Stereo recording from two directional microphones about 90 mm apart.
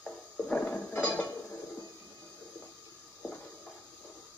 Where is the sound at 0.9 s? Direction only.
25° left (ahead or behind).